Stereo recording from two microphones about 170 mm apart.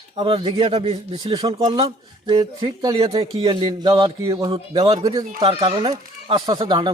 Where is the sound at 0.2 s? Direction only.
30° right (ahead or behind).